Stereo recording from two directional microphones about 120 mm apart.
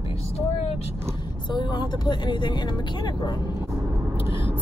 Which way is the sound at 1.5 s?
40° left (ahead or behind).